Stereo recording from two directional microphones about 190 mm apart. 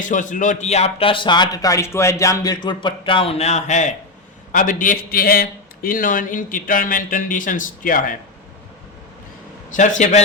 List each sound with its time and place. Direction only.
0.0 s a man's voice: 40° left (ahead or behind)
9.7 s a man's voice: 40° left (ahead or behind)